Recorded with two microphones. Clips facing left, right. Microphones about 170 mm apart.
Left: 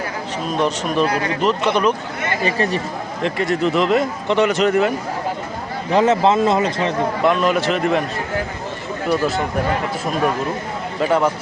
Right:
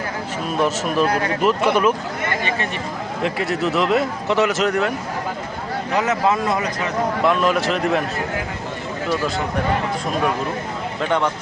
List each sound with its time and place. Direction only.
0.5 s speech: 5° right (ahead or behind)
1.0 s speech: 50° right (ahead or behind)
1.4 s speech: 10° right (ahead or behind)
2.4 s speech: 35° left (ahead or behind)
3.2 s speech: 5° right (ahead or behind)
5.9 s speech: 30° left (ahead or behind)
7.3 s speech: centre (ahead or behind)
11.0 s speech: 5° left (ahead or behind)